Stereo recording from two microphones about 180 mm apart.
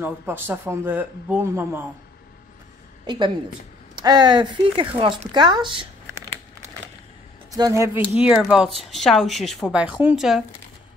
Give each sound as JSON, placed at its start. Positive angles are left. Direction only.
{"t": 0.0, "sound": "speech", "side_deg": -10}
{"t": 3.9, "sound": "speech", "side_deg": -25}
{"t": 7.5, "sound": "speech", "side_deg": -20}
{"t": 8.2, "sound": "speech", "side_deg": -5}